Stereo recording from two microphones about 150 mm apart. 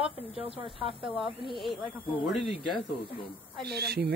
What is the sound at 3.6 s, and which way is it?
Speech, 90° right.